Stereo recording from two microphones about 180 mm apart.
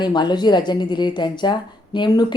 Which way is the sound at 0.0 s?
25° left (ahead or behind).